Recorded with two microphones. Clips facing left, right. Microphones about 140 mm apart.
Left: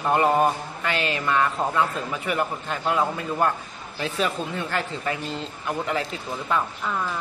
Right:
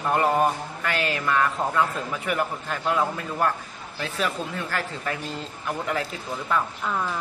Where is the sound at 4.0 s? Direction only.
20° left (ahead or behind).